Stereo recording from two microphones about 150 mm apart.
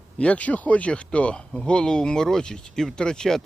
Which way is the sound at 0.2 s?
10° left (ahead or behind).